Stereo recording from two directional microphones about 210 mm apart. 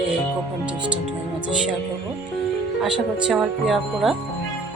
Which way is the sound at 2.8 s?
5° right (ahead or behind).